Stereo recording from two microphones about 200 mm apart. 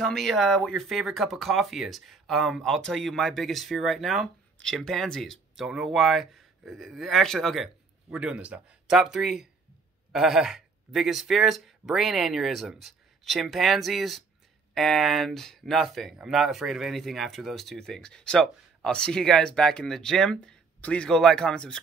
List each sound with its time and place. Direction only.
0.0 s speech: centre (ahead or behind)